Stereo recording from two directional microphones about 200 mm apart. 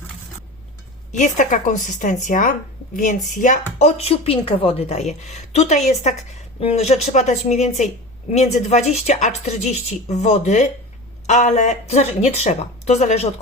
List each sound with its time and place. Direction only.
1.1 s a woman's voice: 40° left (ahead or behind)